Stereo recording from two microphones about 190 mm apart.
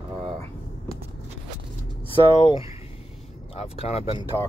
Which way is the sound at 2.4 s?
30° left (ahead or behind).